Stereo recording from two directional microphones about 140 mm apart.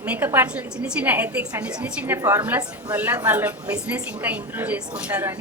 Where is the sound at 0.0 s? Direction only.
10° right (ahead or behind).